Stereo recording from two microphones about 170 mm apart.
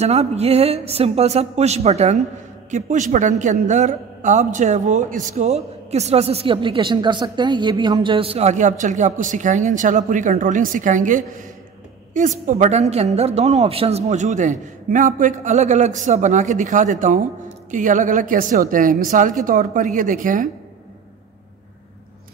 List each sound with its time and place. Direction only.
0.0 s a man's voice: 40° right (ahead or behind)